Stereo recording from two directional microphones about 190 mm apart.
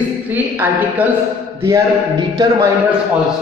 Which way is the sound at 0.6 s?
10° right (ahead or behind).